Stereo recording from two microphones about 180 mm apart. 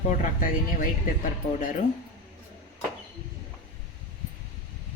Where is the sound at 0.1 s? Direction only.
50° left (ahead or behind).